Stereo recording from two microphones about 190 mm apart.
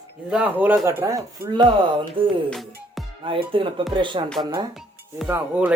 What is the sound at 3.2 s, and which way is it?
Speech, 25° right (ahead or behind).